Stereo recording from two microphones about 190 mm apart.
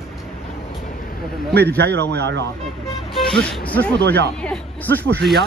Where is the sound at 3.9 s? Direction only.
60° right (ahead or behind).